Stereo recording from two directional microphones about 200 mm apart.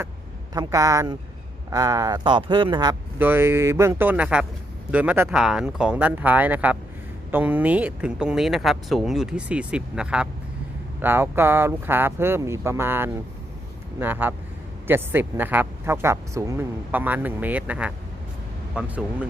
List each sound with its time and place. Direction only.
0.5 s speech: 20° right (ahead or behind)
3.2 s speech: 10° right (ahead or behind)